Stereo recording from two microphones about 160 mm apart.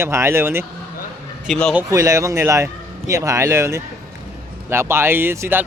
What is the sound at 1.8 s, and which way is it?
A man's voice, 20° right (ahead or behind).